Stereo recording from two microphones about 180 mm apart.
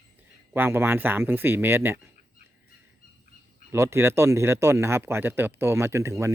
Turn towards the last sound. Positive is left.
turn(degrees=-15)  # may be behind; listen again after turning